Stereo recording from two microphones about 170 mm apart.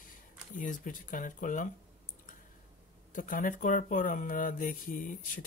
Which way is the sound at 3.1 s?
50° left (ahead or behind).